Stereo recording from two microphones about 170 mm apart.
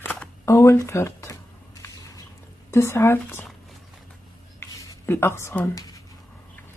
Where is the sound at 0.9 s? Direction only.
15° left (ahead or behind).